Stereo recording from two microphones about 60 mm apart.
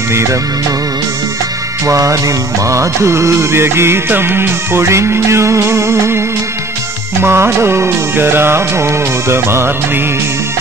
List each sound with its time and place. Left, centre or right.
0.1 s music: right
1.9 s music: right
7.2 s music: right